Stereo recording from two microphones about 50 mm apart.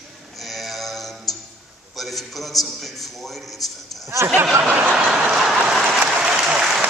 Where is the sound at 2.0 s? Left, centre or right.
Centre.